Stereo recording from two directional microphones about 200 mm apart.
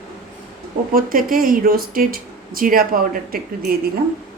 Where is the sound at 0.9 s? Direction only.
45° right (ahead or behind).